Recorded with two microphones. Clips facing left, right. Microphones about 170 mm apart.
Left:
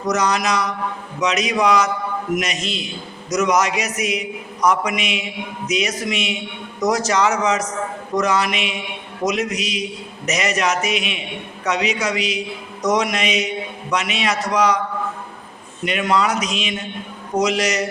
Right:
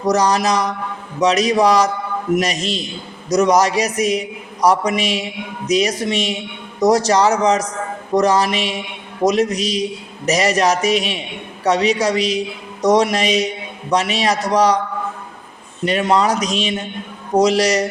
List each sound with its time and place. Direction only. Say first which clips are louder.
0.0 s speech: right 4 dB; 35° right (ahead or behind)
15.8 s speech: right 3 dB; 35° right (ahead or behind)